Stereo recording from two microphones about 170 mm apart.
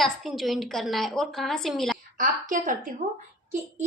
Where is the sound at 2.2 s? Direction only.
50° right (ahead or behind).